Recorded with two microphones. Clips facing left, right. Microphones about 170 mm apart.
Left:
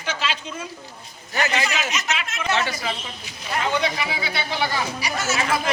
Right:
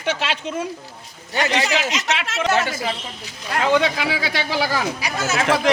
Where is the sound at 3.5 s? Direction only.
90° right.